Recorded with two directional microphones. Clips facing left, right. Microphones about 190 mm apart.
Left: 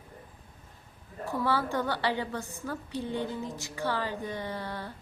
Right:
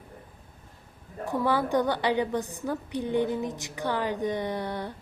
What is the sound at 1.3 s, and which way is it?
A woman's voice, 15° right (ahead or behind).